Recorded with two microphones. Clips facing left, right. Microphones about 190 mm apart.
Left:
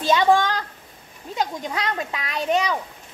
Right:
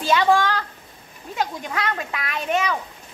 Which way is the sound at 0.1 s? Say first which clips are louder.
Left 1 dB; 20° left (ahead or behind).